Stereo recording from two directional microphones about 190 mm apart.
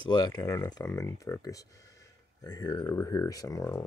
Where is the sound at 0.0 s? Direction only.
20° left (ahead or behind).